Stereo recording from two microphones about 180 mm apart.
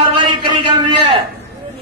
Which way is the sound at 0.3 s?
25° right (ahead or behind).